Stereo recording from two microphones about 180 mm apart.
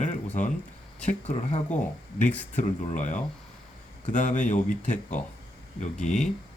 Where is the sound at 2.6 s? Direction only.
45° left (ahead or behind).